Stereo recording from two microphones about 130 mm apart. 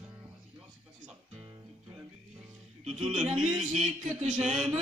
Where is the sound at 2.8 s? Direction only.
60° right (ahead or behind).